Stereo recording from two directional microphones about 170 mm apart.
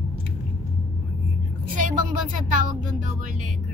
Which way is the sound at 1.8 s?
50° right (ahead or behind).